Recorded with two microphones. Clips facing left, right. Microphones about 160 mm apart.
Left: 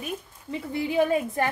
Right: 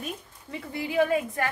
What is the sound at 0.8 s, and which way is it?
Speech, 20° left (ahead or behind).